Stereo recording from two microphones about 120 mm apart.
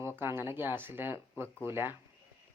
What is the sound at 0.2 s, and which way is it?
Speech, 20° right (ahead or behind).